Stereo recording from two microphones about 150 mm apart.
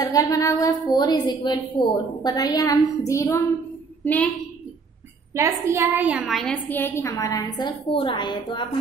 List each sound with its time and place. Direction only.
0.0 s a woman's voice: 25° left (ahead or behind)
5.3 s a woman's voice: 20° right (ahead or behind); by 8.6 s 35° left (ahead or behind)